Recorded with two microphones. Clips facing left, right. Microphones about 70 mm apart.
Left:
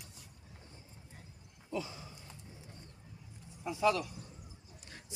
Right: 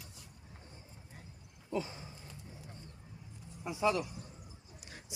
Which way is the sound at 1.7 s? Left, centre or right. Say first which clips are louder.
Right 2 dB; right.